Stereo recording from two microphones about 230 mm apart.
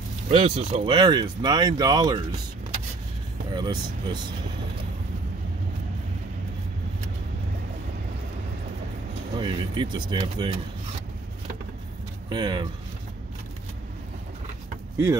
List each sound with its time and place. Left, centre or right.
0.3 s speech: right
3.5 s speech: centre
9.4 s speech: centre
12.3 s speech: centre